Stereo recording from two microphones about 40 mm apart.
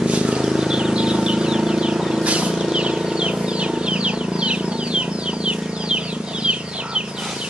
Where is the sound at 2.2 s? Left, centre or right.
Right.